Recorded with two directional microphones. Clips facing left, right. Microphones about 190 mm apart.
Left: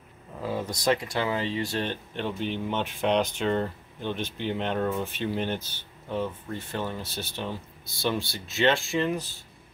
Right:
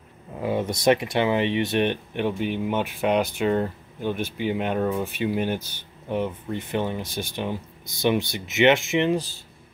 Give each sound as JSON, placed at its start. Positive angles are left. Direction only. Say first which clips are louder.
{"t": 0.4, "sound": "speech", "louder": "right 6 dB", "side_deg": -20}